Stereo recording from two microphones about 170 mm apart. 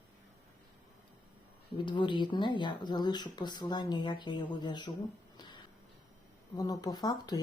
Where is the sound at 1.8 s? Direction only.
25° left (ahead or behind).